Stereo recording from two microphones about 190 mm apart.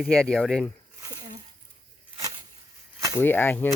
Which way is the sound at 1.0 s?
20° right (ahead or behind).